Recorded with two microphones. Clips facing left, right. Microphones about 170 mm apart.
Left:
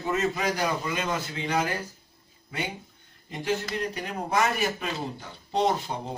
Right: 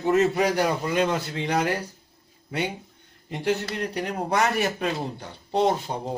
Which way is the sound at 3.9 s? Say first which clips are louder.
Right 3 dB; 70° right (ahead or behind).